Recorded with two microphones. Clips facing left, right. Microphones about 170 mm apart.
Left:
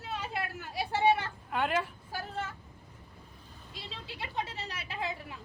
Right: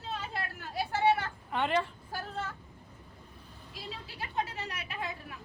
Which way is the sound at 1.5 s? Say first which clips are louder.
Right 1 dB; 5° left (ahead or behind).